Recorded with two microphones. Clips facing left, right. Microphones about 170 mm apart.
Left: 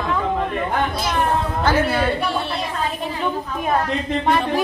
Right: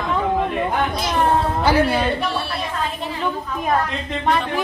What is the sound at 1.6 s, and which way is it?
Speech, 10° right (ahead or behind).